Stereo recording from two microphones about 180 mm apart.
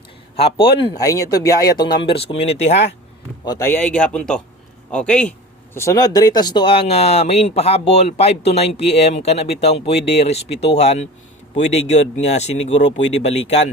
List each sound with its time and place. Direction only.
0.3 s speech: 30° left (ahead or behind)
0.9 s speech: 20° left (ahead or behind); by 2.8 s 35° left (ahead or behind)
3.4 s a man's voice: 20° left (ahead or behind)
5.7 s speech: 15° left (ahead or behind); by 13.7 s 35° left (ahead or behind)